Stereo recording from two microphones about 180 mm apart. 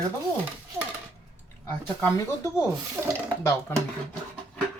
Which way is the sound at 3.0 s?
10° right (ahead or behind).